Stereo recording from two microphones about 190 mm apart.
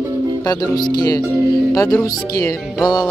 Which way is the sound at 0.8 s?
20° left (ahead or behind).